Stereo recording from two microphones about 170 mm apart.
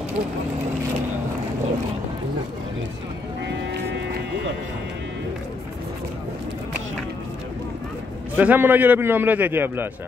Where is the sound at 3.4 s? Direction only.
90° right.